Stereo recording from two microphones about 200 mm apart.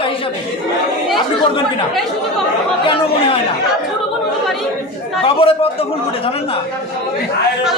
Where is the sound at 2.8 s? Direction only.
25° left (ahead or behind).